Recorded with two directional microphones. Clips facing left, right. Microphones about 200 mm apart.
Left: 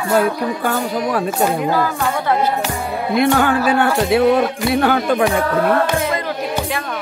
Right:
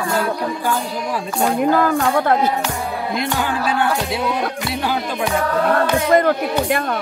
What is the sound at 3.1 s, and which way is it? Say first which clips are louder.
Speech: left 9 dB; 55° left (ahead or behind).